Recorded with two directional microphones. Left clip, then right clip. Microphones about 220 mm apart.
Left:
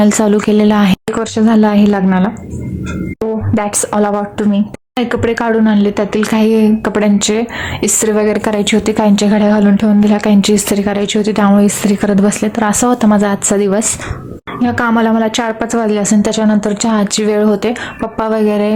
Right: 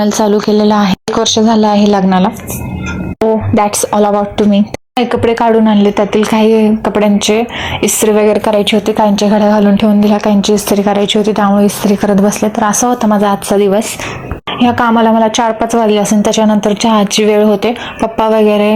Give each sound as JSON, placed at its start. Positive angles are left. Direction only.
{"t": 0.0, "sound": "a woman's voice", "side_deg": 15}